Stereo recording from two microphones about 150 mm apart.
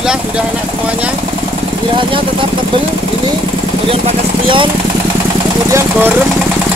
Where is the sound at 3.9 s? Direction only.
35° right (ahead or behind).